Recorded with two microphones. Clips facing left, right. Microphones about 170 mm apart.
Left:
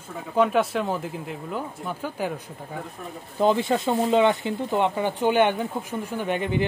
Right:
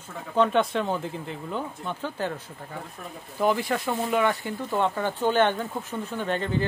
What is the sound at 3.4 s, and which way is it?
Speech, 25° left (ahead or behind).